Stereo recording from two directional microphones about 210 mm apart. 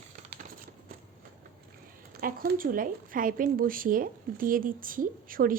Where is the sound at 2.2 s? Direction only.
40° right (ahead or behind).